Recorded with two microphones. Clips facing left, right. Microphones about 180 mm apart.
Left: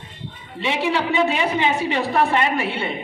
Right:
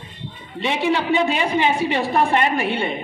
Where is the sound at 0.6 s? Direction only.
15° right (ahead or behind).